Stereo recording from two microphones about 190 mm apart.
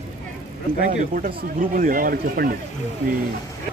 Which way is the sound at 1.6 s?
45° right (ahead or behind).